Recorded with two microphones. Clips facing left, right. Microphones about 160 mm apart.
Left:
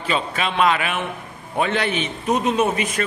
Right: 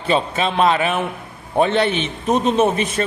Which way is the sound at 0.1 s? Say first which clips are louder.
Right 5 dB; 30° right (ahead or behind).